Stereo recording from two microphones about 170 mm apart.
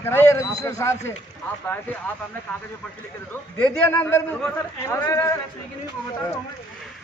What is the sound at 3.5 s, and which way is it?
A man's voice, 10° left (ahead or behind).